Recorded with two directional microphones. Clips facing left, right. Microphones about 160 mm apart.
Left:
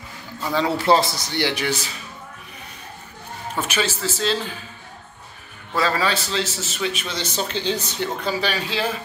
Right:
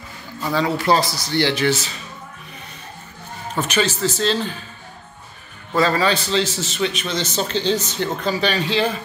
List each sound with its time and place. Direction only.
0.7 s a man's voice: 25° left (ahead or behind)
3.6 s a man's voice: 10° left (ahead or behind)
5.8 s a man's voice: 5° left (ahead or behind)